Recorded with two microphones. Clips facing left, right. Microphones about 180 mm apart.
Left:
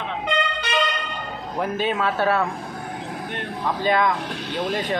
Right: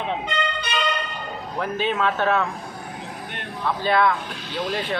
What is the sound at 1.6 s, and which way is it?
Speech, 10° left (ahead or behind).